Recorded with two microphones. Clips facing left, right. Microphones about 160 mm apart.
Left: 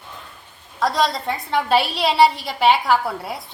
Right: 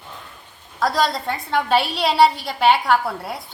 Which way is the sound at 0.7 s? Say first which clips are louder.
Even; centre (ahead or behind).